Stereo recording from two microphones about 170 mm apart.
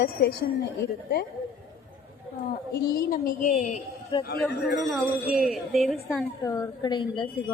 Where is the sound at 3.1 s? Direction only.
50° left (ahead or behind).